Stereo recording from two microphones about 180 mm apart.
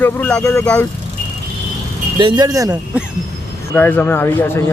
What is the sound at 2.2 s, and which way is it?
Speech, 20° right (ahead or behind).